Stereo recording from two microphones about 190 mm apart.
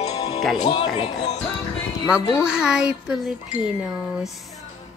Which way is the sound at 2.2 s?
20° left (ahead or behind).